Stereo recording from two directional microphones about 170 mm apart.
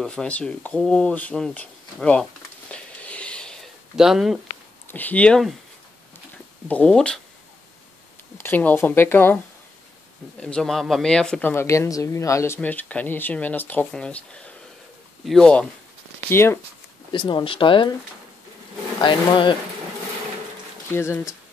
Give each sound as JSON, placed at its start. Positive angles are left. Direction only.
{"t": 0.0, "sound": "speech", "side_deg": 5}
{"t": 2.7, "sound": "a sound", "side_deg": 5}
{"t": 4.8, "sound": "speech", "side_deg": 10}
{"t": 6.7, "sound": "speech", "side_deg": 5}
{"t": 8.4, "sound": "speech", "side_deg": 10}
{"t": 10.4, "sound": "speech", "side_deg": 5}
{"t": 16.3, "sound": "speech", "side_deg": 15}
{"t": 17.1, "sound": "speech", "side_deg": 30}
{"t": 18.9, "sound": "speech", "side_deg": 30}
{"t": 20.9, "sound": "speech", "side_deg": 15}